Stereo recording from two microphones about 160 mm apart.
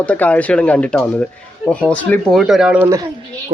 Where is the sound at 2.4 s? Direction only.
5° right (ahead or behind).